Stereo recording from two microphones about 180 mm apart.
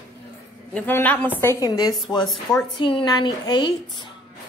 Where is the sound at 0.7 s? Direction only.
10° left (ahead or behind); by 4.1 s 25° left (ahead or behind).